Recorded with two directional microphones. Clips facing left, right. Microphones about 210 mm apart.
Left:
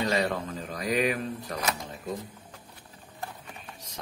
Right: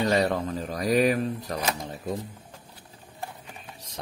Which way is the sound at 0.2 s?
40° right (ahead or behind).